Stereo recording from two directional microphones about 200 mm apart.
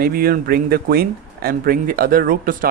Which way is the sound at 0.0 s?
50° right (ahead or behind).